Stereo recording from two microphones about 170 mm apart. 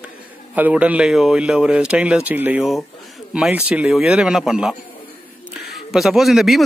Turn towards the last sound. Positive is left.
turn(degrees=0)  # may be behind; listen again after turning